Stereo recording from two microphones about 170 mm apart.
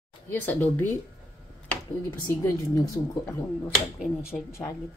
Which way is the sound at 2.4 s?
20° left (ahead or behind).